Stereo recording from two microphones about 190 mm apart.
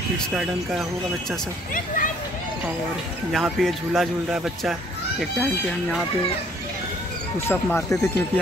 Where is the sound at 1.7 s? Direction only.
45° left (ahead or behind).